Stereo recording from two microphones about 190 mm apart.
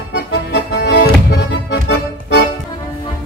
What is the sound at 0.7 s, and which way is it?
Music, 65° left (ahead or behind).